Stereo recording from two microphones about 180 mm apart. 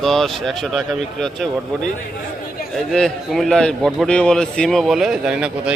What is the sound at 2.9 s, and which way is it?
A man's voice, centre (ahead or behind).